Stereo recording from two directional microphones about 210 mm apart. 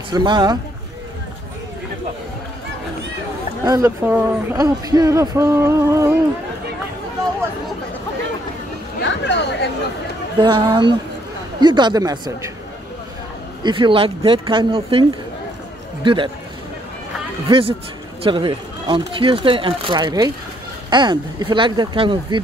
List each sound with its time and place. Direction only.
0.1 s speech: 20° right (ahead or behind)
3.6 s speech: 15° right (ahead or behind)
9.0 s speech: 55° left (ahead or behind)
10.4 s speech: 20° right (ahead or behind)
13.6 s speech: 20° right (ahead or behind)
17.5 s speech: 25° right (ahead or behind)